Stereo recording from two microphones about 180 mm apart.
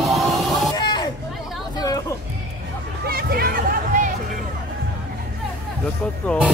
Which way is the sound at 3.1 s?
60° right (ahead or behind).